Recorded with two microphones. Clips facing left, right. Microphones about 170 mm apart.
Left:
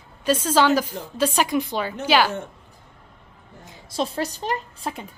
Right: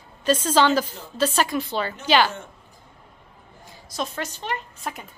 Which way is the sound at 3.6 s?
25° left (ahead or behind).